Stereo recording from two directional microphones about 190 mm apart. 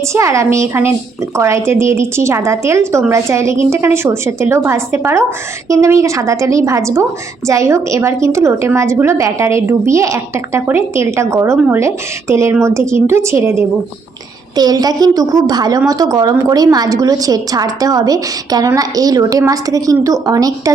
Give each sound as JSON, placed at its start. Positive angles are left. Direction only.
{"t": 0.1, "sound": "a woman's voice", "side_deg": -15}